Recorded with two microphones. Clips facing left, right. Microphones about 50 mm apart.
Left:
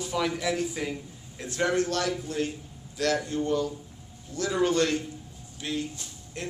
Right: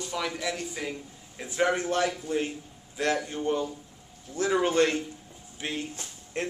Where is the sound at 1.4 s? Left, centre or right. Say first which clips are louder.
Even; centre; by 6.5 s right.